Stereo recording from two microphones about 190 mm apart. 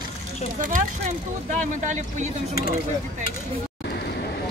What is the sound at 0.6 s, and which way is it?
Speech, 45° right (ahead or behind).